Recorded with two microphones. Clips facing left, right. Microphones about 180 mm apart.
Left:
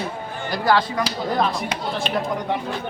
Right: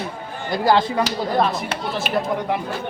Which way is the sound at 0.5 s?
25° right (ahead or behind).